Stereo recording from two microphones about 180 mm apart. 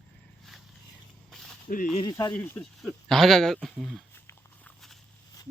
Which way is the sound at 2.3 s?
10° left (ahead or behind).